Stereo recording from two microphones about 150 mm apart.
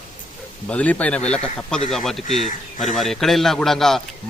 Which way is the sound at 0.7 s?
10° left (ahead or behind).